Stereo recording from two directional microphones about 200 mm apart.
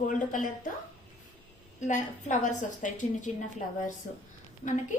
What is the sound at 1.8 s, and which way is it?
A woman's voice, 40° left (ahead or behind).